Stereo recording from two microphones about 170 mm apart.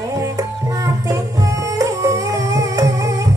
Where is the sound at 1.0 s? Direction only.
20° right (ahead or behind).